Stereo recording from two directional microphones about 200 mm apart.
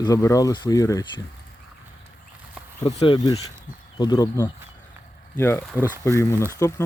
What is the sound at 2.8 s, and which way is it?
Speech, 25° left (ahead or behind).